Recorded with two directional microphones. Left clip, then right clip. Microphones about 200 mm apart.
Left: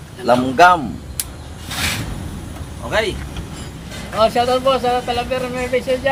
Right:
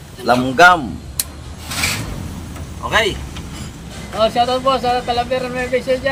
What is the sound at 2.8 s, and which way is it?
Speech, 20° right (ahead or behind).